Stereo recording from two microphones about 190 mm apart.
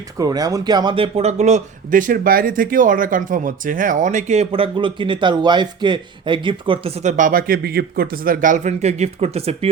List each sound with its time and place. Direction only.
0.2 s a man's voice: 20° right (ahead or behind)